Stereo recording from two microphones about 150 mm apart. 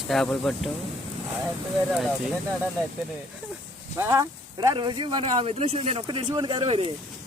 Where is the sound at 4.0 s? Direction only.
20° right (ahead or behind); by 6.9 s 35° right (ahead or behind).